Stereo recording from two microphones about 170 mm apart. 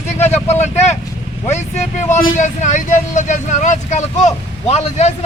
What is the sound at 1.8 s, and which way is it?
Speech, 45° left (ahead or behind).